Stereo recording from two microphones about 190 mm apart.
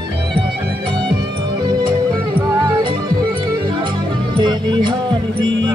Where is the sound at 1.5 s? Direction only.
25° right (ahead or behind).